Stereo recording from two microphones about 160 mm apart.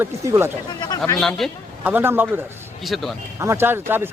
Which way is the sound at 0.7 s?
25° left (ahead or behind).